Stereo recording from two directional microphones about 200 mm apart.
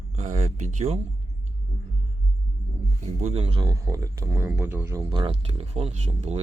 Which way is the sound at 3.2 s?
30° right (ahead or behind).